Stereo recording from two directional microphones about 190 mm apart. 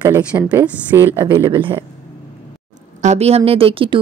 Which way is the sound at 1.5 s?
25° right (ahead or behind).